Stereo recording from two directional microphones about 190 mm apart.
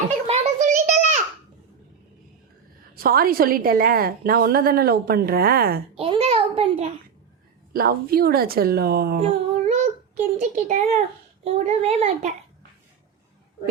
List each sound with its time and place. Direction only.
0.3 s a sound: 40° right (ahead or behind)
2.9 s a woman's voice: 50° right (ahead or behind)
6.0 s a sound: 30° right (ahead or behind)
7.7 s a woman's voice: 50° right (ahead or behind)
9.2 s child singing: 35° right (ahead or behind)
11.4 s a child's voice: 35° right (ahead or behind)